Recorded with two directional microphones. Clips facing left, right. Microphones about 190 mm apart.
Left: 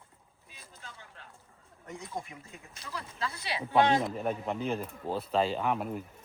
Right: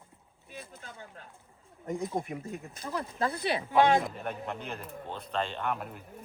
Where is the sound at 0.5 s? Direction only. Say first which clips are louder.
Right 11 dB; 60° right (ahead or behind).